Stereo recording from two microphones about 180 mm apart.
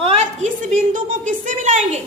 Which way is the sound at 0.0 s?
35° right (ahead or behind).